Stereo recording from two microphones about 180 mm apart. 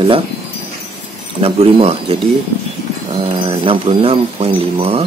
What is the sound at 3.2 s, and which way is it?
A man's voice, 30° right (ahead or behind).